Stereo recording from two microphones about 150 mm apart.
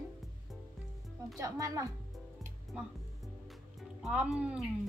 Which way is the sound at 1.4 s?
20° right (ahead or behind).